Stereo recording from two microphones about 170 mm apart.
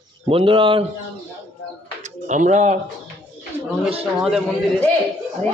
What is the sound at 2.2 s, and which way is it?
Speech, 45° right (ahead or behind).